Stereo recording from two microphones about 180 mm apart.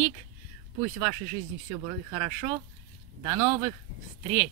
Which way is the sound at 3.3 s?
25° right (ahead or behind).